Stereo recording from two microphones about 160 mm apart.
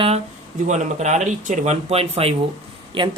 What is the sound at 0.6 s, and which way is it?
Speech, 45° right (ahead or behind).